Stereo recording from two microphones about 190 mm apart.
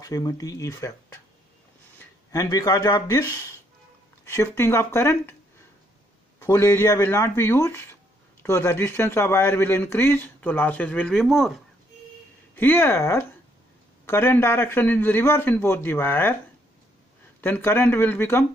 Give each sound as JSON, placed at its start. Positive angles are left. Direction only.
{"t": 0.0, "sound": "speech", "side_deg": 20}
{"t": 2.0, "sound": "speech", "side_deg": 20}
{"t": 6.4, "sound": "speech", "side_deg": 15}
{"t": 12.5, "sound": "speech", "side_deg": 10}
{"t": 17.4, "sound": "speech", "side_deg": 10}